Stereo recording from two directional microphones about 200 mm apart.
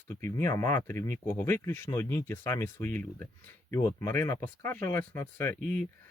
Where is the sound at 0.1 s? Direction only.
15° left (ahead or behind).